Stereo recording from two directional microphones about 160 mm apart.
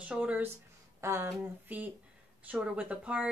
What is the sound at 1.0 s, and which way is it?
Speech, 20° right (ahead or behind).